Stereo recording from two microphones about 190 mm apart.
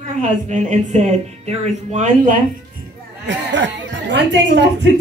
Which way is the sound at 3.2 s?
75° right (ahead or behind).